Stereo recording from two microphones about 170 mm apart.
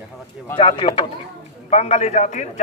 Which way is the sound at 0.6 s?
35° left (ahead or behind).